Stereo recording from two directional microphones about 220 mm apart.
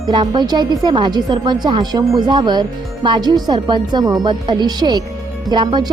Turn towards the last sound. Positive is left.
turn(degrees=-20)  # may be behind; listen again after turning